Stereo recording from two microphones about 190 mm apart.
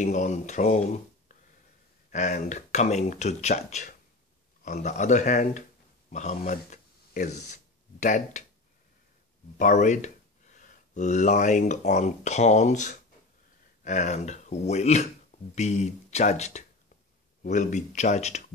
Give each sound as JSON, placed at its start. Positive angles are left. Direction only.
{"t": 0.0, "sound": "speech", "side_deg": 40}
{"t": 2.0, "sound": "speech", "side_deg": 40}
{"t": 9.6, "sound": "speech", "side_deg": 40}